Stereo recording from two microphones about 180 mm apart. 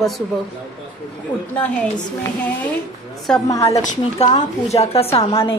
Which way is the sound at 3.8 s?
45° left (ahead or behind).